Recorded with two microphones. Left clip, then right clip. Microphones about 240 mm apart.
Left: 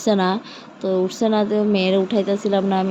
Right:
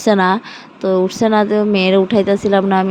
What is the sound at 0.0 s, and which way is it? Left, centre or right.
Speech, right.